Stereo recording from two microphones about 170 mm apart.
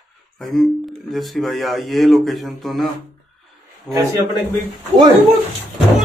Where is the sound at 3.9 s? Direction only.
Centre (ahead or behind).